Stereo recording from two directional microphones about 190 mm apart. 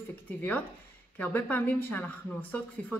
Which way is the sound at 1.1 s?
10° left (ahead or behind).